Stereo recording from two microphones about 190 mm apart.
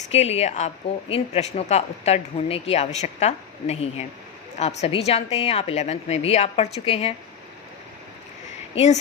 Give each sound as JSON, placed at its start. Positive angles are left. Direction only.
{"t": 0.1, "sound": "speech", "side_deg": 35}
{"t": 8.7, "sound": "speech", "side_deg": 35}